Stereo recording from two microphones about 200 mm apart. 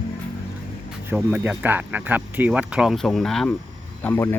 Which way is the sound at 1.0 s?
10° right (ahead or behind).